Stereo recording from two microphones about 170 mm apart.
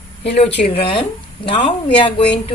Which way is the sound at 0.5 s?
35° left (ahead or behind).